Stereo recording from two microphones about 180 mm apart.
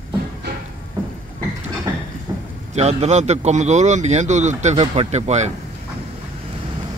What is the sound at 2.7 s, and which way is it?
Speech, 35° right (ahead or behind).